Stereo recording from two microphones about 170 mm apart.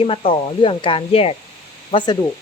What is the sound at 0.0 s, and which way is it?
Speech, 35° left (ahead or behind).